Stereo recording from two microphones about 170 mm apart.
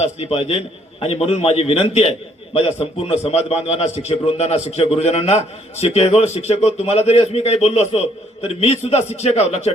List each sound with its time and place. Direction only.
0.0 s a man's voice: 35° left (ahead or behind)